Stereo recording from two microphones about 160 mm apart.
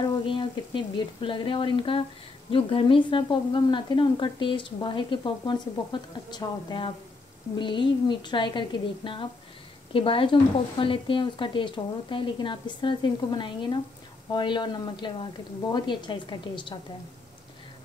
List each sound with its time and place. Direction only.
0.0 s a woman's voice: 30° left (ahead or behind)